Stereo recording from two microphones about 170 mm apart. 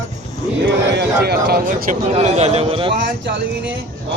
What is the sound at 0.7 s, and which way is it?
A man's voice, 80° right.